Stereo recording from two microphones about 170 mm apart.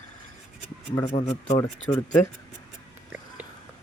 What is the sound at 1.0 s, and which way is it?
Speech, 40° left (ahead or behind).